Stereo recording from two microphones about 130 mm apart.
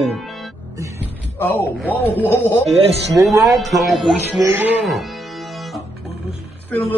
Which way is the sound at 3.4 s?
Centre (ahead or behind).